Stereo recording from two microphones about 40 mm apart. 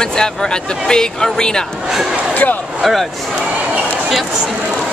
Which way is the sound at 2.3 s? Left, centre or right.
Left.